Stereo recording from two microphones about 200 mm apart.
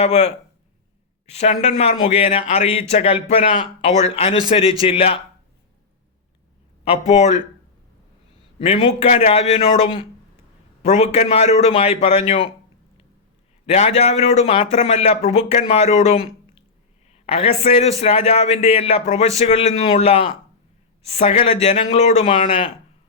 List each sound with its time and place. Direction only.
0.0 s a man's voice: 35° left (ahead or behind)
1.3 s a man's voice: 35° left (ahead or behind)
6.8 s a man's voice: 30° left (ahead or behind)
8.5 s a man's voice: 30° left (ahead or behind)
13.7 s a man's voice: 35° left (ahead or behind)